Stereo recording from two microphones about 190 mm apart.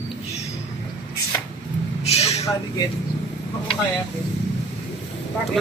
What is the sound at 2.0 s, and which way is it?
Vehicle, 35° left (ahead or behind).